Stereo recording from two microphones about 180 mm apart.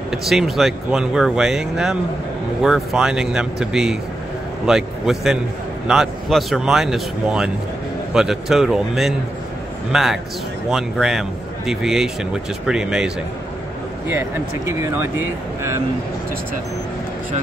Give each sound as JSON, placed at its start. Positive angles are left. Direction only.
{"t": 0.1, "sound": "speech", "side_deg": 0}